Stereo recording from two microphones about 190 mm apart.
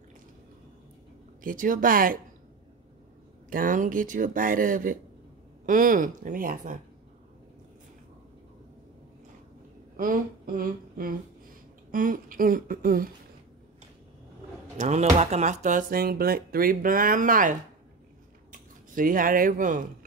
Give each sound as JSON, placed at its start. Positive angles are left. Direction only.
{"t": 1.4, "sound": "speech", "side_deg": -45}
{"t": 3.4, "sound": "speech", "side_deg": -45}
{"t": 9.9, "sound": "speech", "side_deg": -45}
{"t": 14.8, "sound": "speech", "side_deg": -35}